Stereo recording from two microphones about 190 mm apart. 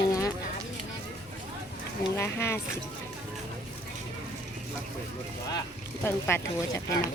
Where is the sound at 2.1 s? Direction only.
10° left (ahead or behind).